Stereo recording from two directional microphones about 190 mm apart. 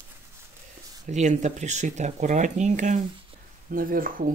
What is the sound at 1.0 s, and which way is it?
Speech, 40° right (ahead or behind).